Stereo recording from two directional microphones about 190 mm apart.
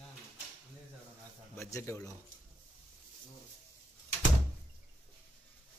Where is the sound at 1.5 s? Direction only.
15° left (ahead or behind).